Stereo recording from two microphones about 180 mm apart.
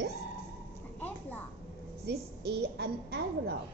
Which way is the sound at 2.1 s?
65° right (ahead or behind).